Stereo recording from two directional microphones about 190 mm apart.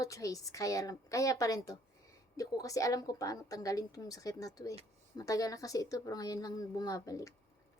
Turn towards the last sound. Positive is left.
turn(degrees=15)  # may be behind; listen again after turning